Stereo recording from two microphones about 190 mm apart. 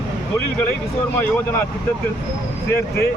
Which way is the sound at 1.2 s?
10° left (ahead or behind).